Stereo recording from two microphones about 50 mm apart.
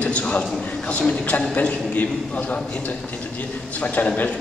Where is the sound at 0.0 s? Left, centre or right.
Left.